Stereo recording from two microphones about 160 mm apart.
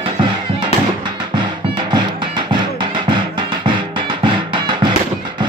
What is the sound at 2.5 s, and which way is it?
Music, 30° right (ahead or behind).